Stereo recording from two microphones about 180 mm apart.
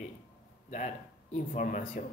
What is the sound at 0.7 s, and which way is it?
Speech, 40° left (ahead or behind).